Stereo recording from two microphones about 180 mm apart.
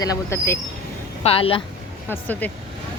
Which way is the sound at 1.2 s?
30° left (ahead or behind).